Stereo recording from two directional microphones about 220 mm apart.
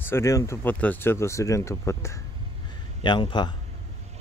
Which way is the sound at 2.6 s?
20° left (ahead or behind).